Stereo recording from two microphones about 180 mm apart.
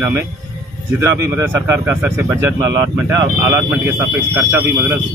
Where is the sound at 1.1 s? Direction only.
15° right (ahead or behind).